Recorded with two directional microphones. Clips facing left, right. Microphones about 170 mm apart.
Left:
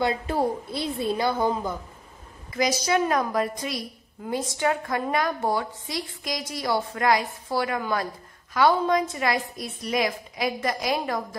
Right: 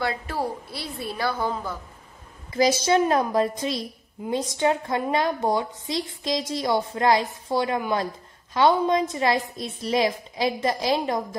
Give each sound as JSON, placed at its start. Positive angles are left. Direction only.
{"t": 0.0, "sound": "a woman's voice", "side_deg": 20}
{"t": 2.5, "sound": "a woman's voice", "side_deg": -30}